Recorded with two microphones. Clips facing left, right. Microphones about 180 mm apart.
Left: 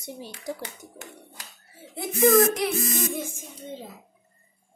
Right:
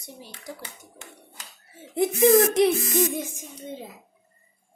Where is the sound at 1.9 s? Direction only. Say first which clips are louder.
Right 2 dB; 25° right (ahead or behind).